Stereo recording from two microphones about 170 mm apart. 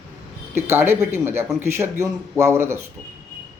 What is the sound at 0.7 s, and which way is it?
A man's voice, 15° right (ahead or behind).